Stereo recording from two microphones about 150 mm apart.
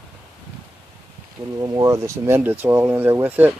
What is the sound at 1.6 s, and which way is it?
Speech, 25° right (ahead or behind).